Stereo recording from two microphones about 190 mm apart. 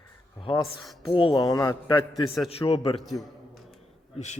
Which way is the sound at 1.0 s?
25° left (ahead or behind).